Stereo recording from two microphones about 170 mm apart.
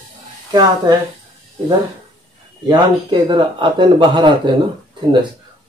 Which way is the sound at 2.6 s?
25° right (ahead or behind).